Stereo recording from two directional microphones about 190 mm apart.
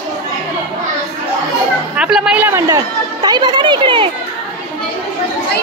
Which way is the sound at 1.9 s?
5° right (ahead or behind).